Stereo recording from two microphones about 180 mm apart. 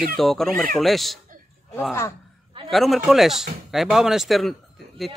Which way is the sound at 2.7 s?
Centre (ahead or behind).